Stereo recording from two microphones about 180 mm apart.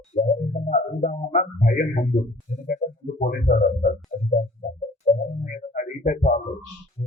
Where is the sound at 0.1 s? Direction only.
40° left (ahead or behind).